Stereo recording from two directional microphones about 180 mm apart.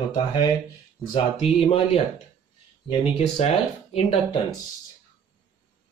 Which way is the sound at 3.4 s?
35° left (ahead or behind).